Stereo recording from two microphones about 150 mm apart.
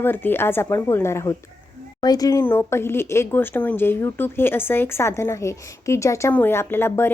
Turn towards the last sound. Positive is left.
turn(degrees=15)  # may be behind; listen again after turning